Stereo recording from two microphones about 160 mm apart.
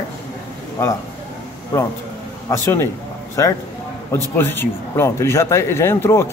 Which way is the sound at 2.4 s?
15° left (ahead or behind).